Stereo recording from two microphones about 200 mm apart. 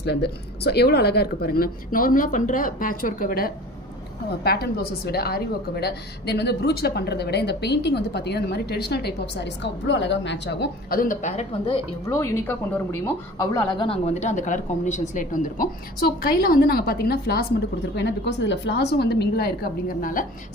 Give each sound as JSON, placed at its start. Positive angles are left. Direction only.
{"t": 0.0, "sound": "a woman's voice", "side_deg": 55}
{"t": 12.1, "sound": "speech", "side_deg": 10}